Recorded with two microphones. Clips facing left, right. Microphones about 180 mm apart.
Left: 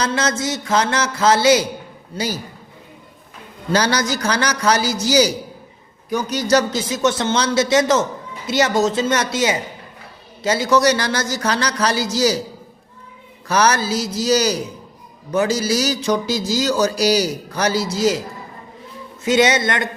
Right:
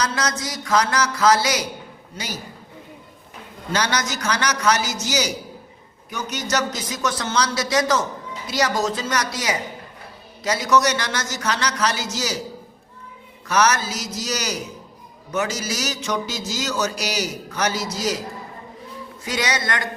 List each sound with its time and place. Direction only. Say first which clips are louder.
0.0 s a man's voice: left 4 dB; 25° left (ahead or behind)
2.1 s music: left 8 dB; 30° left (ahead or behind)
3.7 s music: left 5 dB; 35° left (ahead or behind)
6.1 s a man's voice: left 8 dB; 35° left (ahead or behind)
10.4 s music: left 4 dB; 30° left (ahead or behind)
13.5 s music: left 3 dB; 35° left (ahead or behind)
19.2 s a man's voice: left 9 dB; 25° left (ahead or behind)